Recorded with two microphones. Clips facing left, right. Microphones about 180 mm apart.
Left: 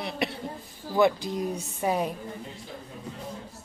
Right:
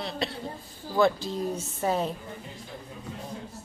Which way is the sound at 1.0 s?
15° left (ahead or behind).